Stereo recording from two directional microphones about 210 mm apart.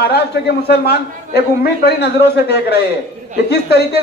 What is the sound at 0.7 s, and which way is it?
Speech, 50° left (ahead or behind).